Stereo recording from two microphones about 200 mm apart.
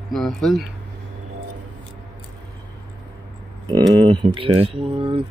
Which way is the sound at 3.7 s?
20° right (ahead or behind).